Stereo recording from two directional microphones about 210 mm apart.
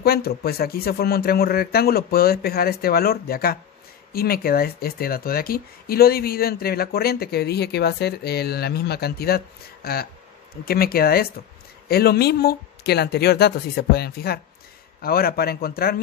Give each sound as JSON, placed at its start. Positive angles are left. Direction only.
{"t": 0.0, "sound": "speech", "side_deg": 45}